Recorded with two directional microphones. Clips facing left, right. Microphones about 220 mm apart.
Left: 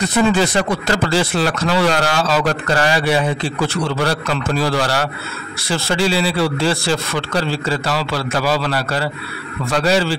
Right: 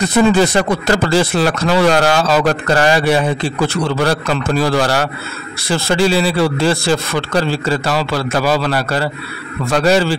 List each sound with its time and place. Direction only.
0.2 s a man's voice: 45° right (ahead or behind)